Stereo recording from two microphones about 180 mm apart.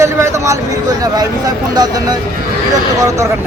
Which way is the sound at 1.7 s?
20° right (ahead or behind).